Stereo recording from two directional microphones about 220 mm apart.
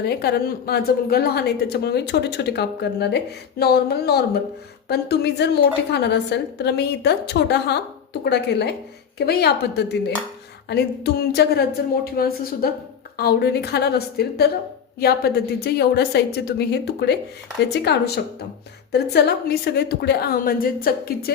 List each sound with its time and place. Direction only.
0.0 s a woman's voice: 45° left (ahead or behind)